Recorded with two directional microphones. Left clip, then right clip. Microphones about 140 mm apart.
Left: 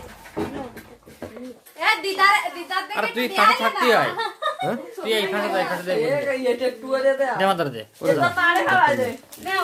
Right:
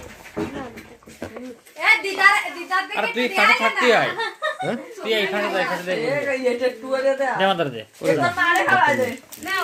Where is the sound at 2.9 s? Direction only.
10° left (ahead or behind).